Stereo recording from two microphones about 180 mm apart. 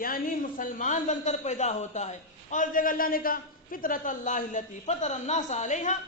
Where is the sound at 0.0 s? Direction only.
50° left (ahead or behind).